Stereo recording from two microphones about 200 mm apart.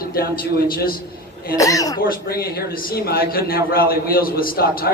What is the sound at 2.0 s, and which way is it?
A man's voice, 45° left (ahead or behind).